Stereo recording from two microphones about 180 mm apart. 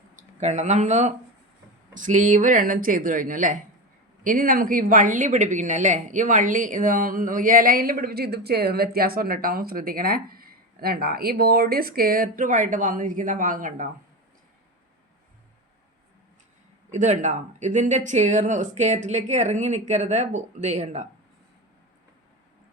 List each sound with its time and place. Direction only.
0.2 s speech: 40° right (ahead or behind)
16.9 s speech: 40° right (ahead or behind)